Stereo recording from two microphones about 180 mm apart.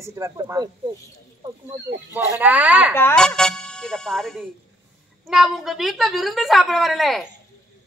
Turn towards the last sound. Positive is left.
turn(degrees=0)  # may be behind; listen again after turning